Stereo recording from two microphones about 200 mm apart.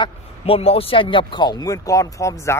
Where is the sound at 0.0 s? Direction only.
30° left (ahead or behind).